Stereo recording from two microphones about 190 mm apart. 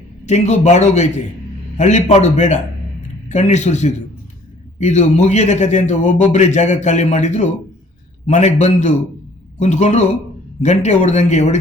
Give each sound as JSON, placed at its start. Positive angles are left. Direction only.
{"t": 0.3, "sound": "a man's voice", "side_deg": 40}